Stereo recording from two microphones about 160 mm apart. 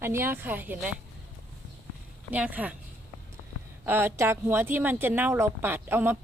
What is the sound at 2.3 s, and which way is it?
Speech, 10° right (ahead or behind).